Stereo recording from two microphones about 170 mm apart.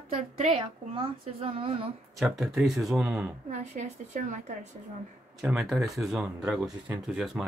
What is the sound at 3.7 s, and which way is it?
Speech, 45° right (ahead or behind).